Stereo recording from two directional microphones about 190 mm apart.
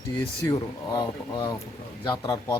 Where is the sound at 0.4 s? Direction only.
20° left (ahead or behind).